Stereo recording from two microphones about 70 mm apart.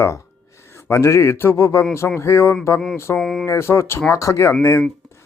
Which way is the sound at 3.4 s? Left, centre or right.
Left.